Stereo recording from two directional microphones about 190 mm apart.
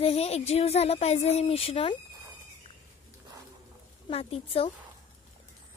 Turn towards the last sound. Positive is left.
turn(degrees=30)  # may be behind; listen again after turning